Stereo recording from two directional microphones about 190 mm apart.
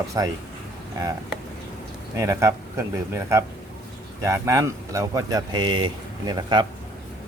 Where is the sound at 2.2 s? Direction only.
15° right (ahead or behind).